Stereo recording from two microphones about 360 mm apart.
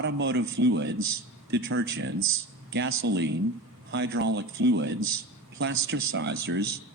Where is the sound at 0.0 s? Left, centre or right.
Right.